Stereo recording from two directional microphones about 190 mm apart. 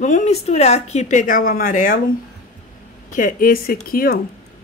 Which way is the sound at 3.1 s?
45° left (ahead or behind).